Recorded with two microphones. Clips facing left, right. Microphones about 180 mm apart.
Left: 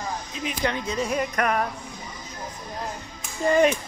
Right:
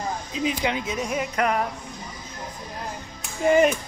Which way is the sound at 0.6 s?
10° right (ahead or behind).